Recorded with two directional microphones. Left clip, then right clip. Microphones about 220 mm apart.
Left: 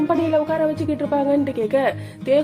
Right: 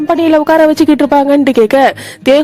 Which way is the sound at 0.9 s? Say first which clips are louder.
Right 12 dB; 50° right (ahead or behind).